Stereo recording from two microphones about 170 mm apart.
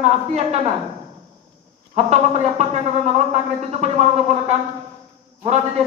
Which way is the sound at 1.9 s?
40° right (ahead or behind).